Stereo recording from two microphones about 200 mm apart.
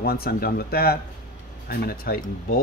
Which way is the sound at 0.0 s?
50° left (ahead or behind).